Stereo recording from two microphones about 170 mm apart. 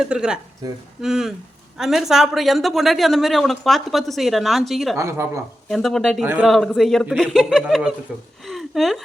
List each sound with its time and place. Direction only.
0.0 s a woman's voice: 5° right (ahead or behind)
0.6 s speech: 20° right (ahead or behind)
1.0 s a woman's voice: centre (ahead or behind)
4.9 s speech: 15° right (ahead or behind)
5.6 s a woman's voice: centre (ahead or behind)
6.2 s speech: 10° right (ahead or behind)
6.5 s a woman's voice: centre (ahead or behind)
8.4 s a sound: centre (ahead or behind)